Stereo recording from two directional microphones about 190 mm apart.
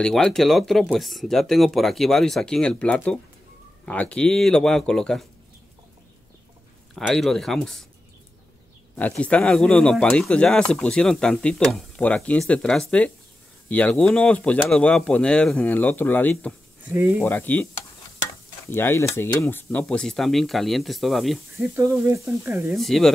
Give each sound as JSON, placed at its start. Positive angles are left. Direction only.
{"t": 0.0, "sound": "speech", "side_deg": 5}
{"t": 7.0, "sound": "speech", "side_deg": 0}
{"t": 8.9, "sound": "speech", "side_deg": 5}
{"t": 18.7, "sound": "speech", "side_deg": 10}
{"t": 21.5, "sound": "speech", "side_deg": -15}
{"t": 22.8, "sound": "speech", "side_deg": 0}